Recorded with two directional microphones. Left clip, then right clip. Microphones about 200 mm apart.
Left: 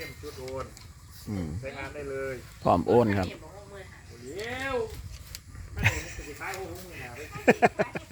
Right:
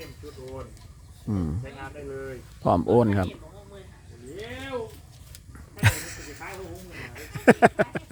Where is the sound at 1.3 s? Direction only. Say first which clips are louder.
Right 5 dB; 30° right (ahead or behind).